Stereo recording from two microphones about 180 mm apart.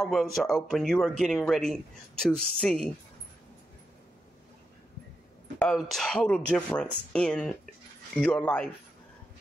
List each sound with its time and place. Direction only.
0.0 s speech: centre (ahead or behind)
5.6 s speech: 5° left (ahead or behind)